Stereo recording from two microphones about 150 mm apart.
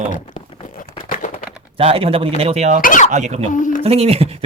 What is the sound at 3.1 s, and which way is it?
Speech, 50° right (ahead or behind).